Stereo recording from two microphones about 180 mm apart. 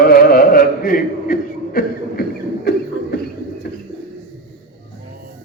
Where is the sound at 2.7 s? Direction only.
60° left (ahead or behind).